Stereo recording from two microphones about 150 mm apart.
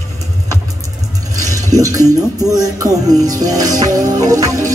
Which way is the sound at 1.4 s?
20° right (ahead or behind).